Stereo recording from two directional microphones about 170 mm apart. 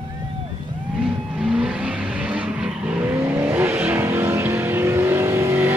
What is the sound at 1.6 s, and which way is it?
Vehicle, 5° right (ahead or behind).